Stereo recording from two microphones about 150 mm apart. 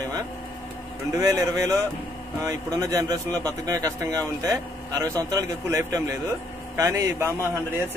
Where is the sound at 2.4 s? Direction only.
20° right (ahead or behind).